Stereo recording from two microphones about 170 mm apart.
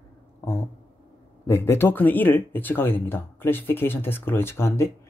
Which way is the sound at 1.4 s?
15° left (ahead or behind).